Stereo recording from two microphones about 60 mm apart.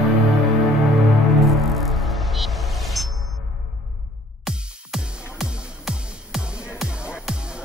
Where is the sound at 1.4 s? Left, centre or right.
Centre.